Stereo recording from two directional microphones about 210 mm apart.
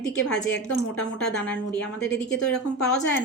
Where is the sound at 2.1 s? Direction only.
55° left (ahead or behind).